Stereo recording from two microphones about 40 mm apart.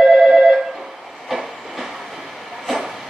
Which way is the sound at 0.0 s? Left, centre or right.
Centre.